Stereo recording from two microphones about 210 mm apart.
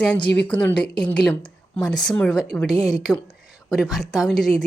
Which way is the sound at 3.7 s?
Centre (ahead or behind).